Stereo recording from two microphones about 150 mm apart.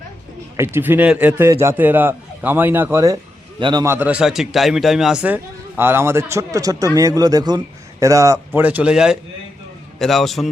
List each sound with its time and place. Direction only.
0.5 s a man's voice: 15° right (ahead or behind)
3.6 s a man's voice: 30° right (ahead or behind)
3.8 s a man's voice: 10° right (ahead or behind)